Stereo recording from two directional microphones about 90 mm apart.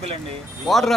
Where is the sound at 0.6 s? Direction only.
Centre (ahead or behind).